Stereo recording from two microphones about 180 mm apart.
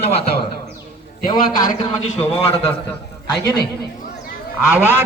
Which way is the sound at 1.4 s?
50° left (ahead or behind).